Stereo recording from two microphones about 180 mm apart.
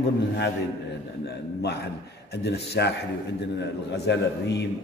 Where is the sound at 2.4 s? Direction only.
65° left (ahead or behind).